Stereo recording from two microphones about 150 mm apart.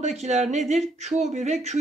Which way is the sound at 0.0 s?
50° right (ahead or behind).